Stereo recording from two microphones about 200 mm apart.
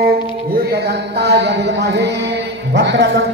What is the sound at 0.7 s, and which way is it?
Speech, 55° right (ahead or behind).